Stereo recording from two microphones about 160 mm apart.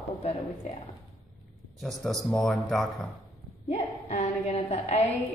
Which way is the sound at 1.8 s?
Centre (ahead or behind).